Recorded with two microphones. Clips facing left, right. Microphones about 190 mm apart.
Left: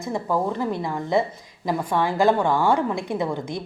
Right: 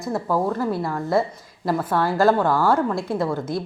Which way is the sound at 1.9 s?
15° left (ahead or behind).